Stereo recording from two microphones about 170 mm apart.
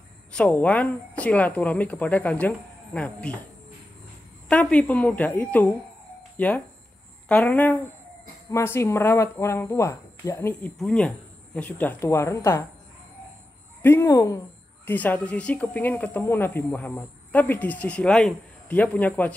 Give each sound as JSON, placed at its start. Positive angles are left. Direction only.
{"t": 0.3, "sound": "speech", "side_deg": 5}
{"t": 4.5, "sound": "speech", "side_deg": 5}
{"t": 10.8, "sound": "speech", "side_deg": 5}
{"t": 13.8, "sound": "speech", "side_deg": 15}